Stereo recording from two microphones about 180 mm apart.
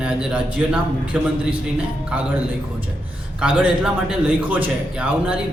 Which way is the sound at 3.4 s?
5° right (ahead or behind).